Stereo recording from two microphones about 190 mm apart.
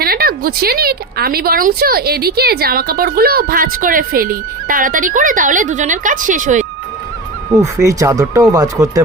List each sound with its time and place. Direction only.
0.0 s a woman's voice: 50° right (ahead or behind)
7.6 s speech: 15° right (ahead or behind)